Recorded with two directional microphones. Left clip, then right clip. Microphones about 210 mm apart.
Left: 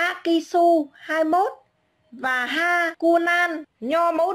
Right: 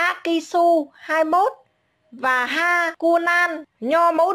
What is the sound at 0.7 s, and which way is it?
Speech, 20° right (ahead or behind).